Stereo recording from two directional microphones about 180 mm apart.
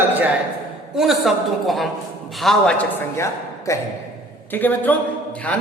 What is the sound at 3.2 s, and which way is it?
A man's voice, 15° left (ahead or behind).